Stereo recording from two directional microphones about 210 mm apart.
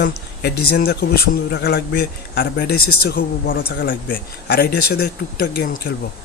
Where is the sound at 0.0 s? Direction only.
50° left (ahead or behind).